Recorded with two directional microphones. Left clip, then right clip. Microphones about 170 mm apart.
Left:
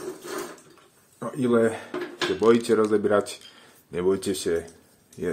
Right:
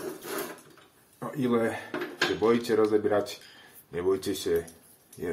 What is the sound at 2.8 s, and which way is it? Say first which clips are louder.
Speech: left 3 dB; 60° left (ahead or behind).